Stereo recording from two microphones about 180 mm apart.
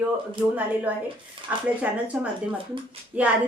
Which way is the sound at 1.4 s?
25° right (ahead or behind).